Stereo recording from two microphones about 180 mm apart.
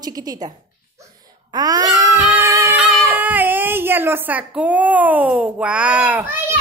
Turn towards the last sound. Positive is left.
turn(degrees=-10)  # may be behind; listen again after turning